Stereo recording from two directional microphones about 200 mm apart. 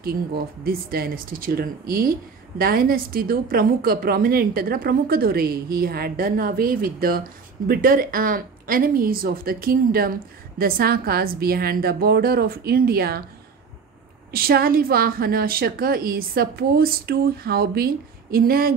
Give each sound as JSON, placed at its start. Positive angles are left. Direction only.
{"t": 0.0, "sound": "a woman's voice", "side_deg": -50}
{"t": 14.3, "sound": "a woman's voice", "side_deg": -50}